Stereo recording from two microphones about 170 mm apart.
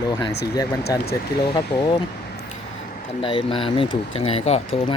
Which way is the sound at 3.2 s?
30° left (ahead or behind).